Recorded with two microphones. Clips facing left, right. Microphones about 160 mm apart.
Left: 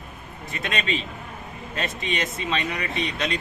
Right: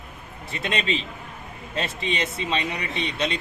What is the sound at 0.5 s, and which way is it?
Speech, 30° right (ahead or behind).